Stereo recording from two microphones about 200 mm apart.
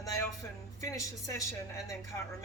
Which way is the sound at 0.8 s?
15° left (ahead or behind).